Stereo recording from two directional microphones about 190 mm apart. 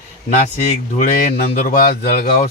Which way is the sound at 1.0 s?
45° left (ahead or behind).